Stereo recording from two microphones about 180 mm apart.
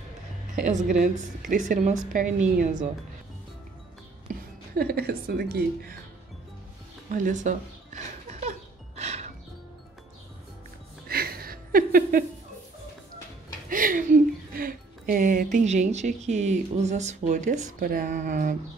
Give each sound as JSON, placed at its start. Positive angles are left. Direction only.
{"t": 0.6, "sound": "speech", "side_deg": -45}
{"t": 4.3, "sound": "a woman's voice", "side_deg": -60}
{"t": 7.1, "sound": "music", "side_deg": -45}
{"t": 11.1, "sound": "a sound", "side_deg": -55}
{"t": 13.7, "sound": "a sound", "side_deg": -50}
{"t": 14.5, "sound": "a woman's voice", "side_deg": -55}
{"t": 17.7, "sound": "speech", "side_deg": -55}